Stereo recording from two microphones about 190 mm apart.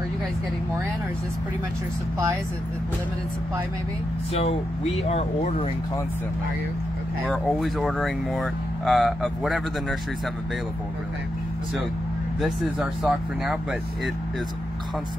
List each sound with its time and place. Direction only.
4.3 s speech: 30° left (ahead or behind)
7.2 s speech: centre (ahead or behind)
12.4 s speech: 5° right (ahead or behind)